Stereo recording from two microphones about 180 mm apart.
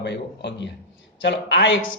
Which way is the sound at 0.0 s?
75° left (ahead or behind).